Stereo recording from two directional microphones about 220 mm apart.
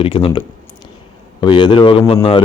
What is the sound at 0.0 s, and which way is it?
Speech, 25° left (ahead or behind).